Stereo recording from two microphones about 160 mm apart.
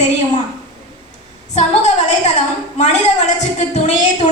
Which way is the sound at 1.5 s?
45° left (ahead or behind).